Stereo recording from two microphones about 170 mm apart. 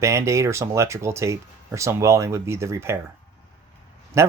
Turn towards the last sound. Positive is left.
turn(degrees=-15)  # may be behind; listen again after turning